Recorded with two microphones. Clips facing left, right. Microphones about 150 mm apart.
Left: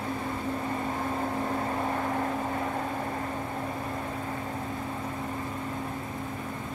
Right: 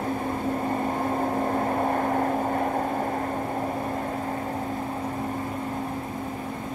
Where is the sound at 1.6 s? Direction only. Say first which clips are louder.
Right 5 dB; 40° right (ahead or behind).